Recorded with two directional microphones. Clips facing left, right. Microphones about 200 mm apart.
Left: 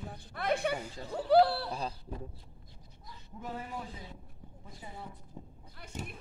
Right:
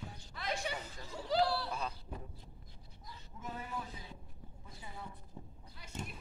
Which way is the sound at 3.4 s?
30° left (ahead or behind).